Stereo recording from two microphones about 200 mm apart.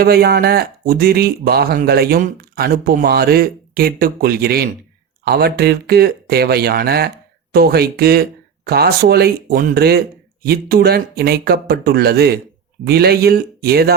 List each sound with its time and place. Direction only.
0.0 s speech: 50° right (ahead or behind)